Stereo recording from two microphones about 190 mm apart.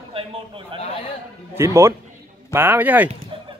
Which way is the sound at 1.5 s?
15° right (ahead or behind).